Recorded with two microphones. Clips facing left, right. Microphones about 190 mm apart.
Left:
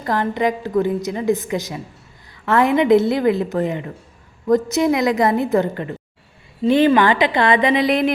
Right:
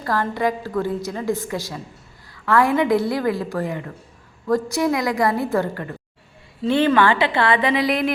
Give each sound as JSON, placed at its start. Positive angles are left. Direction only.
{"t": 0.0, "sound": "a woman's voice", "side_deg": 20}